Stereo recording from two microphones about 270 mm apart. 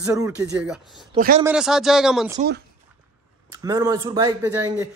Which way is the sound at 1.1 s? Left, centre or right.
Right.